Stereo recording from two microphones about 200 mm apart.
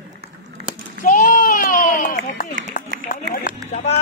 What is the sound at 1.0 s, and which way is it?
Run, 40° left (ahead or behind).